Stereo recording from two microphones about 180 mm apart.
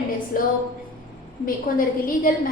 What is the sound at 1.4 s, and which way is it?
Speech, 50° left (ahead or behind).